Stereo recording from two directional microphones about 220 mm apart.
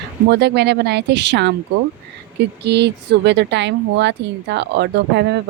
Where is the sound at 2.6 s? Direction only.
50° right (ahead or behind).